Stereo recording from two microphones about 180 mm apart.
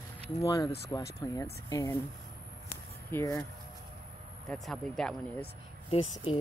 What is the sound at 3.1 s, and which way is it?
Speech, 15° left (ahead or behind).